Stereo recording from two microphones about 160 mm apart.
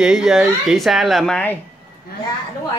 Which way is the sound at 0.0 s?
5° right (ahead or behind).